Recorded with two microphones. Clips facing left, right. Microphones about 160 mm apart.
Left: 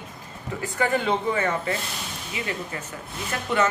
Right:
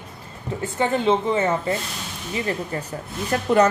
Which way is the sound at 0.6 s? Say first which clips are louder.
Right 3 dB; 25° right (ahead or behind).